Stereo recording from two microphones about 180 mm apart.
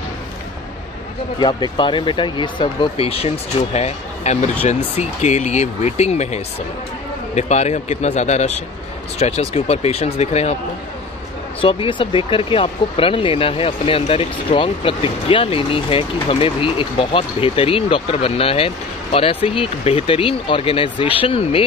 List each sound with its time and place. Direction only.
1.4 s speech: 25° left (ahead or behind)
11.6 s speech: 30° left (ahead or behind)